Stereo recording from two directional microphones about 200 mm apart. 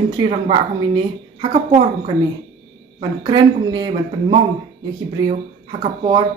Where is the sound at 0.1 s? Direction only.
25° right (ahead or behind).